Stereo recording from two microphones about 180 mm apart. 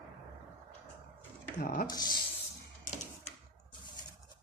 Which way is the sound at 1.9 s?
20° left (ahead or behind).